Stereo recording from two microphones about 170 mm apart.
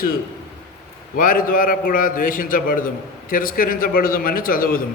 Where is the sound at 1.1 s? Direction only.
55° left (ahead or behind).